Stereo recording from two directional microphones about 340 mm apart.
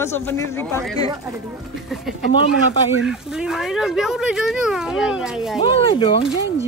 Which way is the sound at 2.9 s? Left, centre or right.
Centre.